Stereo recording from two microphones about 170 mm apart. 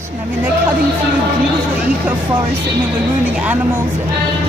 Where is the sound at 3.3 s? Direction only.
10° right (ahead or behind).